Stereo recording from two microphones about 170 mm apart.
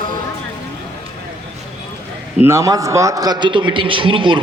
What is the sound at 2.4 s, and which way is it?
A man's voice, 15° right (ahead or behind).